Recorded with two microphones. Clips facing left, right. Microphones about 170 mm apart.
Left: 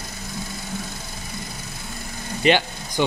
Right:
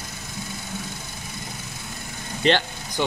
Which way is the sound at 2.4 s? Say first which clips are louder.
Left 2 dB; 10° left (ahead or behind).